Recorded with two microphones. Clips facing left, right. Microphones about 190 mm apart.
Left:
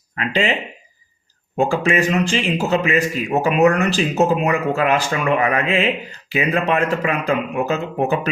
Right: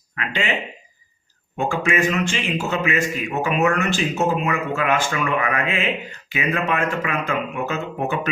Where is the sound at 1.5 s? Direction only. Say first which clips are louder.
Left 4 dB; 35° left (ahead or behind).